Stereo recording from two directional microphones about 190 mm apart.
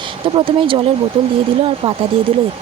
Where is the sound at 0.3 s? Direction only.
25° right (ahead or behind).